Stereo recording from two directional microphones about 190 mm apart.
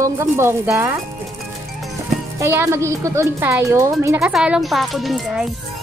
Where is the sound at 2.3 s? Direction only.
15° right (ahead or behind).